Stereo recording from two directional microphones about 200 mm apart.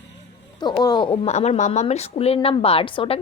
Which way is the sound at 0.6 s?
20° left (ahead or behind).